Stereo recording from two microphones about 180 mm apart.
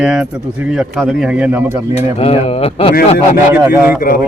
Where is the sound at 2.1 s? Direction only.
35° left (ahead or behind).